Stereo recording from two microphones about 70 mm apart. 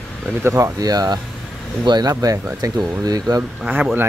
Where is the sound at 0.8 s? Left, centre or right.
Right.